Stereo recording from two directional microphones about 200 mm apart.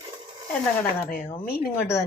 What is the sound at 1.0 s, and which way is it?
Speech, 45° left (ahead or behind).